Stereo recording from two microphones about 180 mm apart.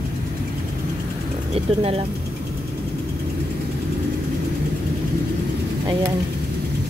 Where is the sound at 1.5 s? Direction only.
35° right (ahead or behind).